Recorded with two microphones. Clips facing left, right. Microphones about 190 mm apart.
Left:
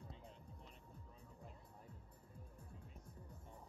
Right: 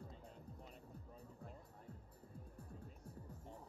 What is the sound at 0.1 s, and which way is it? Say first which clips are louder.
Music: right 2 dB; 45° right (ahead or behind).